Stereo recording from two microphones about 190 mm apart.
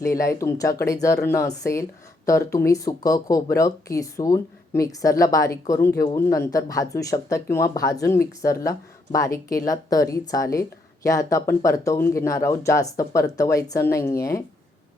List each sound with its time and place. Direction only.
0.1 s speech: 15° left (ahead or behind)